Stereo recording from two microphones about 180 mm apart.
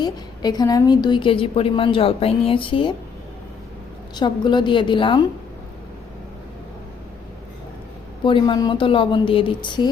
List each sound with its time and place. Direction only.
0.0 s a woman's voice: 20° left (ahead or behind)
4.1 s a woman's voice: 25° left (ahead or behind)
8.2 s a woman's voice: 25° left (ahead or behind)